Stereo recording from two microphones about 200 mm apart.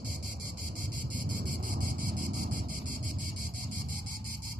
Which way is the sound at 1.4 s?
45° right (ahead or behind).